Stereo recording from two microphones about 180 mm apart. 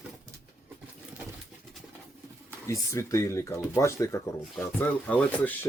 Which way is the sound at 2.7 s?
15° left (ahead or behind).